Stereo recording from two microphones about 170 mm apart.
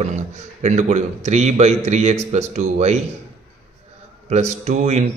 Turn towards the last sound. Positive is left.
turn(degrees=-40)  # may be behind; listen again after turning